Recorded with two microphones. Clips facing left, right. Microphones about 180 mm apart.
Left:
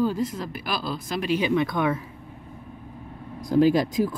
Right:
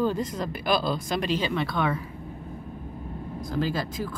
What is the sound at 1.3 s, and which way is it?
Speech, 15° left (ahead or behind).